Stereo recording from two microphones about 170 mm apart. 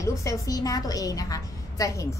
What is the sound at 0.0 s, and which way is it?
A woman's voice, 20° left (ahead or behind).